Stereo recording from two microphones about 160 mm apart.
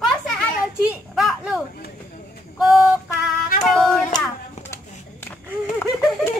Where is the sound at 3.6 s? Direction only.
5° left (ahead or behind).